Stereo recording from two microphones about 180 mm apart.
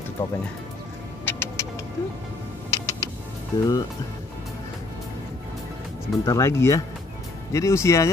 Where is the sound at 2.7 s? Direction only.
20° left (ahead or behind).